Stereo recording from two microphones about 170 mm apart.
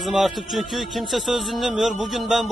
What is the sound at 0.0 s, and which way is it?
Speech, centre (ahead or behind).